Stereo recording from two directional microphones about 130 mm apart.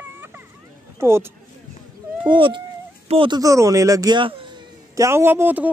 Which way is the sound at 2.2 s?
40° right (ahead or behind).